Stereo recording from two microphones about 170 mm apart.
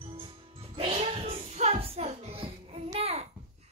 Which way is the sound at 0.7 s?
35° right (ahead or behind).